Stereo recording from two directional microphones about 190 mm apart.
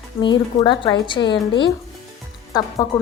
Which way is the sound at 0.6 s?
25° left (ahead or behind).